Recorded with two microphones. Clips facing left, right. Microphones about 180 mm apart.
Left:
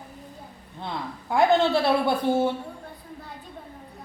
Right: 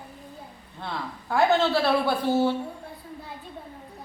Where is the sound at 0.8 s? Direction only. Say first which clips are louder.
Left 1 dB; 15° left (ahead or behind).